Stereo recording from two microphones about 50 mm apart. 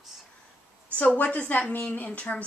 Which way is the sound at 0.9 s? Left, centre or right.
Left.